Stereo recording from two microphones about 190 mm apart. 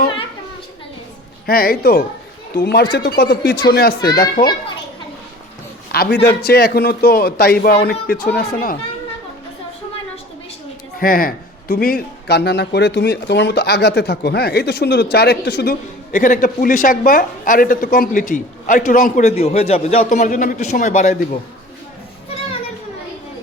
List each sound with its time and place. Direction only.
1.5 s speech: 50° left (ahead or behind)
5.9 s speech: 60° left (ahead or behind)
11.0 s speech: 50° left (ahead or behind)
16.1 s speech: 45° left (ahead or behind)
19.4 s a man's voice: 35° left (ahead or behind)